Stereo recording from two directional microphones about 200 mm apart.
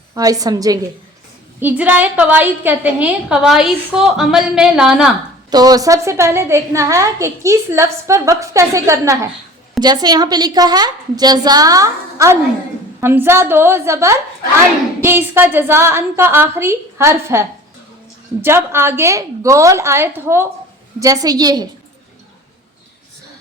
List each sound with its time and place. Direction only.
0.1 s a woman's voice: 20° right (ahead or behind); by 5.1 s 5° right (ahead or behind)
5.5 s a woman's voice: 20° right (ahead or behind)
18.4 s a woman's voice: 10° right (ahead or behind)